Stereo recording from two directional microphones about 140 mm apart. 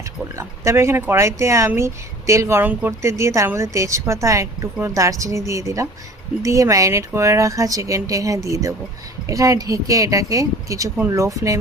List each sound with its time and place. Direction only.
0.3 s speech: 20° right (ahead or behind)